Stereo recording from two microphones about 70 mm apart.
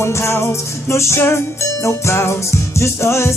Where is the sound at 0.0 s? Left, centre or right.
Left.